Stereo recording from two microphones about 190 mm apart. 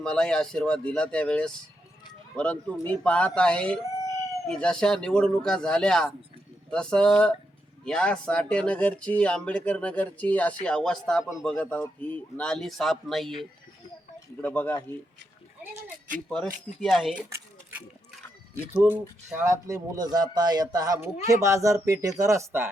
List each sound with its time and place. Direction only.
0.0 s speech: 5° left (ahead or behind)
16.8 s speech: centre (ahead or behind)
17.3 s a sound: 10° right (ahead or behind)
18.7 s speech: 10° right (ahead or behind)